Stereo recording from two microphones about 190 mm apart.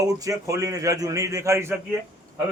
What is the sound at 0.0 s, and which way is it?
A man's voice, 20° right (ahead or behind).